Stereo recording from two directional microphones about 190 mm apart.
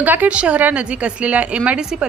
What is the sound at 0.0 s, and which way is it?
A woman's voice, 10° right (ahead or behind).